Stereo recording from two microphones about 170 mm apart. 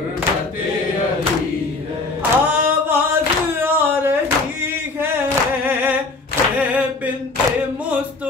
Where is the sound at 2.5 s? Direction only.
15° right (ahead or behind).